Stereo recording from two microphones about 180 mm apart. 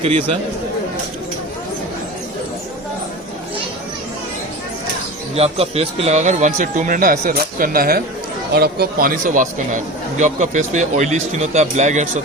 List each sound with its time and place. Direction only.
0.0 s a man's voice: 35° right (ahead or behind)
5.4 s a man's voice: 35° right (ahead or behind)